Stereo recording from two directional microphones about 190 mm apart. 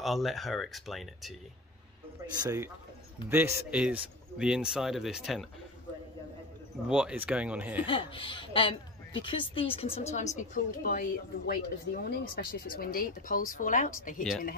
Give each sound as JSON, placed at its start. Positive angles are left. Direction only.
{"t": 0.0, "sound": "speech", "side_deg": 0}
{"t": 2.4, "sound": "speech", "side_deg": -15}
{"t": 6.9, "sound": "speech", "side_deg": -5}
{"t": 7.8, "sound": "a woman's voice", "side_deg": 25}